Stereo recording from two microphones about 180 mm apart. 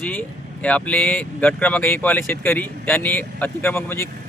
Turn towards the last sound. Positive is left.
turn(degrees=15)  # may be behind; listen again after turning